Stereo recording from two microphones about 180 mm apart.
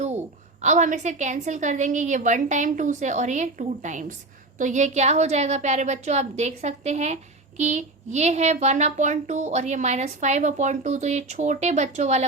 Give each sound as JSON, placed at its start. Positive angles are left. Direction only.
{"t": 0.6, "sound": "a woman's voice", "side_deg": -40}